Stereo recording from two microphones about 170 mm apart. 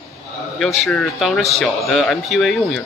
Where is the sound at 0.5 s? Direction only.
Centre (ahead or behind).